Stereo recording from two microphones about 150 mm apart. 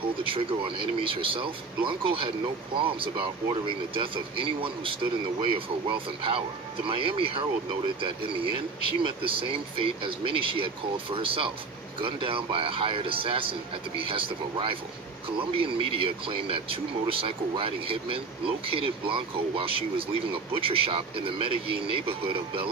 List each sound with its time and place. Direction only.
0.2 s speech: 35° right (ahead or behind)